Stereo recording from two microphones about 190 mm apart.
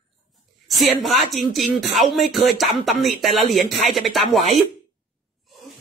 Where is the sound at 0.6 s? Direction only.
Centre (ahead or behind).